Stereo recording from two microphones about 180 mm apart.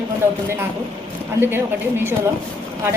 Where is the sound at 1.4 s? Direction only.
15° right (ahead or behind).